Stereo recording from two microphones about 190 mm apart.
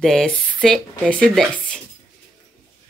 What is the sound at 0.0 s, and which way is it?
Speech, centre (ahead or behind).